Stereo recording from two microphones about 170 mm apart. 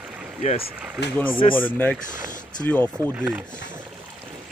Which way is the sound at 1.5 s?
10° left (ahead or behind).